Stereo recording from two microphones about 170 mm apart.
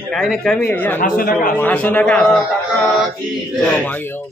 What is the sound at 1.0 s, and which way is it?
Speech, 55° left (ahead or behind).